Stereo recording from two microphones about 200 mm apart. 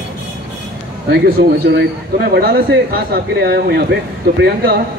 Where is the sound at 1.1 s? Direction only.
50° right (ahead or behind).